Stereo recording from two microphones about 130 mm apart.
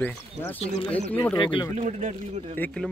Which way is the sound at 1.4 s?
35° left (ahead or behind).